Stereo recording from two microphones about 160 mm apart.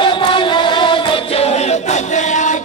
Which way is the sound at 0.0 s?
30° left (ahead or behind).